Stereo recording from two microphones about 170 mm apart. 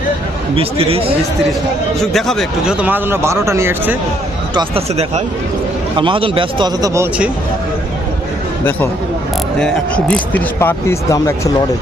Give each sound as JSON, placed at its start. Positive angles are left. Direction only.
{"t": 0.5, "sound": "speech", "side_deg": -35}
{"t": 2.1, "sound": "speech", "side_deg": 0}
{"t": 4.5, "sound": "a man's voice", "side_deg": -35}
{"t": 9.6, "sound": "speech", "side_deg": 5}